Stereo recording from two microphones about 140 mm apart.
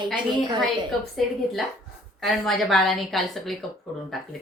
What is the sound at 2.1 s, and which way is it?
Speech, centre (ahead or behind).